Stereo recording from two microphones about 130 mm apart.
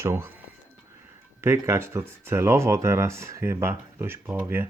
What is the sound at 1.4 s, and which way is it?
Speech, 20° right (ahead or behind).